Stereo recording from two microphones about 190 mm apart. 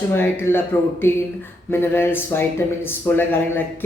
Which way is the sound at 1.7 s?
10° left (ahead or behind).